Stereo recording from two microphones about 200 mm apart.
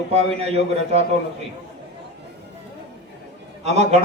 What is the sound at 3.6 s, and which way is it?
Speech, 35° right (ahead or behind).